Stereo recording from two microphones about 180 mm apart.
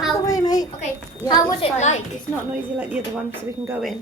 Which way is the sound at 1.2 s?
25° left (ahead or behind).